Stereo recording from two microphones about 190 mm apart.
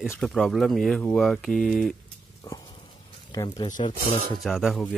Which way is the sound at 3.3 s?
20° left (ahead or behind).